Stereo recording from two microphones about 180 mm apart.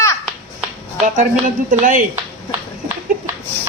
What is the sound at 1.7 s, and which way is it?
Speech, 50° right (ahead or behind).